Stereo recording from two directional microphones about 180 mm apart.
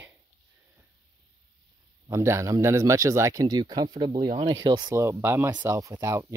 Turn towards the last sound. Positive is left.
turn(degrees=-15)  # may be behind; listen again after turning